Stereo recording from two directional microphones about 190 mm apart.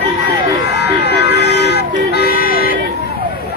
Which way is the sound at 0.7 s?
60° left (ahead or behind).